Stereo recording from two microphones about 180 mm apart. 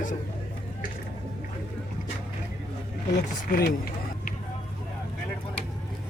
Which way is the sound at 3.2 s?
55° left (ahead or behind).